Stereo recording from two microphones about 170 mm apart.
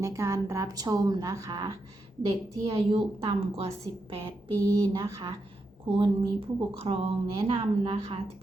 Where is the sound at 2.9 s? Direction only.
35° right (ahead or behind).